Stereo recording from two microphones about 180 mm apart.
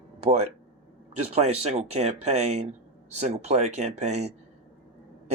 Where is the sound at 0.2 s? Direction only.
35° right (ahead or behind).